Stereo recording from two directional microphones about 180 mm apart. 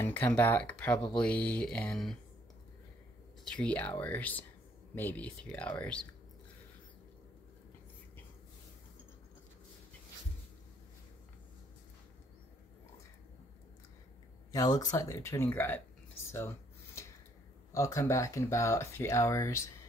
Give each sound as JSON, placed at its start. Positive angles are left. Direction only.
{"t": 0.0, "sound": "speech", "side_deg": 10}
{"t": 3.5, "sound": "speech", "side_deg": 5}
{"t": 14.5, "sound": "speech", "side_deg": 20}
{"t": 16.3, "sound": "a sound", "side_deg": 15}
{"t": 17.7, "sound": "speech", "side_deg": 15}